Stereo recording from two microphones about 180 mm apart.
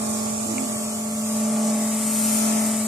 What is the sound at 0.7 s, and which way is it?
Vehicle, 15° right (ahead or behind).